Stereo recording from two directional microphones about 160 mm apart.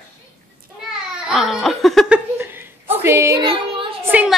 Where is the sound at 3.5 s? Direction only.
30° right (ahead or behind).